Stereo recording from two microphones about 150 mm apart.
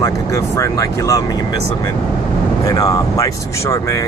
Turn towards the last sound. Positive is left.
turn(degrees=20)  # may be behind; listen again after turning